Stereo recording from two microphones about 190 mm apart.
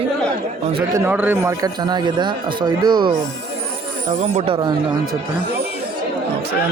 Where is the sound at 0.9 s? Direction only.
10° right (ahead or behind).